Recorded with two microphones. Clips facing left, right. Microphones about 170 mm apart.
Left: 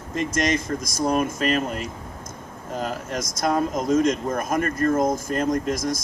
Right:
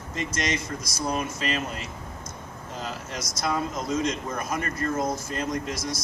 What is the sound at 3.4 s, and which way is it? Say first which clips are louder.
Speech: left 5 dB; 50° left (ahead or behind).